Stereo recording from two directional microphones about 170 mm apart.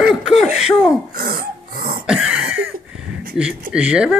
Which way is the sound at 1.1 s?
60° right (ahead or behind).